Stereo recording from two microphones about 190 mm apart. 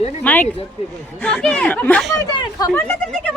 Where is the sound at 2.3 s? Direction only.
15° left (ahead or behind).